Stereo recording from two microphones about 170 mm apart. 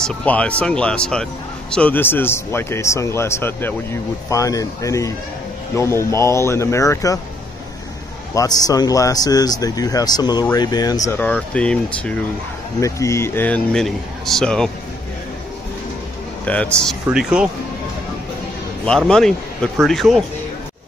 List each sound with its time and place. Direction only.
0.0 s speech: 5° left (ahead or behind)
8.4 s speech: 20° left (ahead or behind)
11.1 s speech: 10° left (ahead or behind)
12.8 s speech: 15° left (ahead or behind)
16.4 s speech: 5° left (ahead or behind)
17.1 s speech: 5° right (ahead or behind)
18.9 s speech: 5° left (ahead or behind)